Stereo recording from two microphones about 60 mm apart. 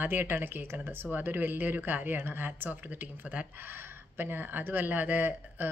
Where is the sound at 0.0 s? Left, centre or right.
Right.